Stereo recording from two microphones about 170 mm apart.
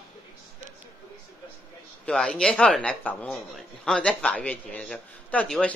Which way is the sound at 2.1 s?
5° left (ahead or behind).